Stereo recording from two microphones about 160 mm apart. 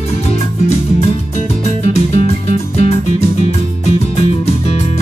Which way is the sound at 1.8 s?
40° left (ahead or behind).